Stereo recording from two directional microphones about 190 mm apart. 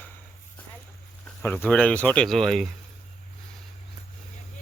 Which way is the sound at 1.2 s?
10° left (ahead or behind).